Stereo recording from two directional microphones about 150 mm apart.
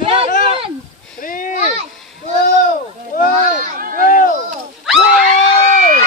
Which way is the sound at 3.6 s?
65° right (ahead or behind).